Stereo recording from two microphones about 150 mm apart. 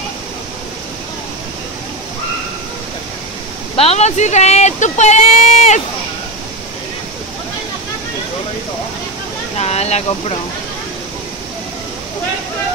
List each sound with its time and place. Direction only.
3.7 s speech: 45° left (ahead or behind)
9.6 s speech: 45° left (ahead or behind)